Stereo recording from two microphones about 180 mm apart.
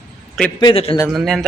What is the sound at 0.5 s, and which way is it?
Speech, 30° left (ahead or behind).